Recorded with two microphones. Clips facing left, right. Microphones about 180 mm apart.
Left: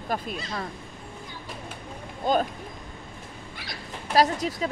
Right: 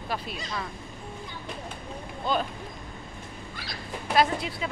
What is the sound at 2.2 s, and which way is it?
Speech, 45° left (ahead or behind).